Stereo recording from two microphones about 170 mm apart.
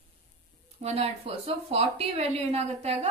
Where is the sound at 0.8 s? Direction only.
35° right (ahead or behind).